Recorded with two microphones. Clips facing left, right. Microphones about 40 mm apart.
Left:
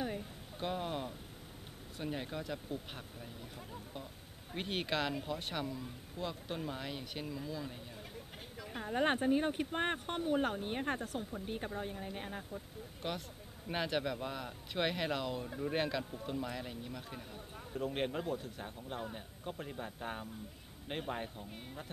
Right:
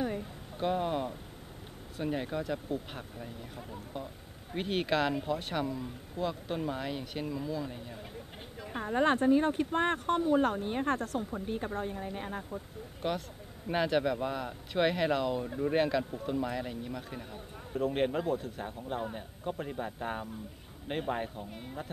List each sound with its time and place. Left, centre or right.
0.0 s a sound: centre
2.0 s a man's voice: centre
4.6 s speech: centre
8.5 s a sound: centre
9.0 s speech: centre
10.3 s a man's voice: centre